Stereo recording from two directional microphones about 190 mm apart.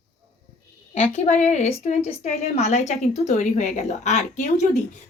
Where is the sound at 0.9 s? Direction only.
35° left (ahead or behind).